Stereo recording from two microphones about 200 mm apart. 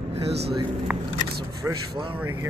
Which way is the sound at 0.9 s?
5° right (ahead or behind).